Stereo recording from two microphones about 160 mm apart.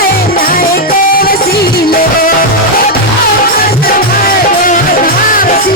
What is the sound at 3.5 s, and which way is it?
Music, 70° left (ahead or behind).